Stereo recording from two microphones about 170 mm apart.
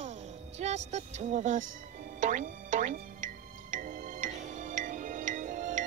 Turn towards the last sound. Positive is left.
turn(degrees=-50)  # may be behind; listen again after turning